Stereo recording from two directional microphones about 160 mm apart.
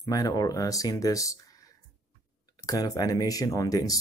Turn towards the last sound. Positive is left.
turn(degrees=20)  # may be behind; listen again after turning